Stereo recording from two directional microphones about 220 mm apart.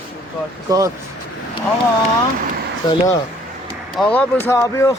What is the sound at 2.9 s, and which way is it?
Speech, 20° left (ahead or behind).